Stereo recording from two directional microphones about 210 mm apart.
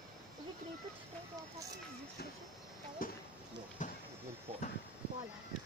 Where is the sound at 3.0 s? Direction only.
40° left (ahead or behind).